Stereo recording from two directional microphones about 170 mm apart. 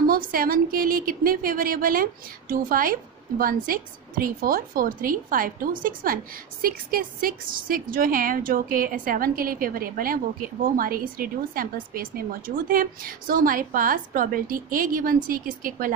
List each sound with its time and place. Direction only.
0.1 s a woman's voice: 55° right (ahead or behind)